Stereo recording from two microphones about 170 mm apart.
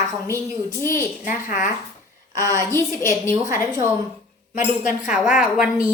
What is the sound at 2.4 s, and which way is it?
Speech, 20° right (ahead or behind).